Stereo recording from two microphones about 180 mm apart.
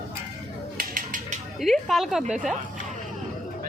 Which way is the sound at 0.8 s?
50° right (ahead or behind).